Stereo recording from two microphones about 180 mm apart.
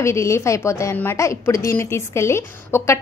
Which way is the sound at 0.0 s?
15° left (ahead or behind).